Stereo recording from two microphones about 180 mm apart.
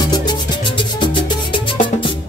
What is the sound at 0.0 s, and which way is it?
Music, 25° left (ahead or behind).